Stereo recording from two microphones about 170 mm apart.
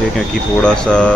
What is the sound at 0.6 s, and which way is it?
Speech, 5° left (ahead or behind).